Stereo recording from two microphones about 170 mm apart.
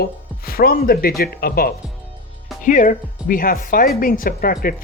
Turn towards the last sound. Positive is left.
turn(degrees=60)  # may be behind; listen again after turning